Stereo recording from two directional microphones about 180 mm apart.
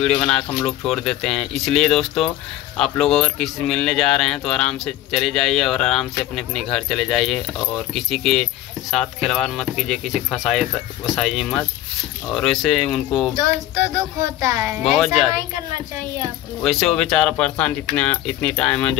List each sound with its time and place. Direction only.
0.0 s speech: 5° left (ahead or behind)
13.3 s a sound: 20° right (ahead or behind)
14.4 s a woman's voice: 15° right (ahead or behind)
14.9 s speech: centre (ahead or behind)
16.6 s speech: centre (ahead or behind)